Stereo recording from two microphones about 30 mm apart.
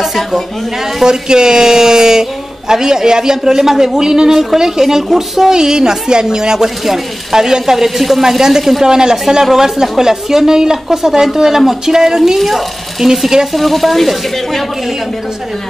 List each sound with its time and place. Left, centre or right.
0.0 s a sound: centre
1.0 s a woman's voice: right
12.4 s frying: centre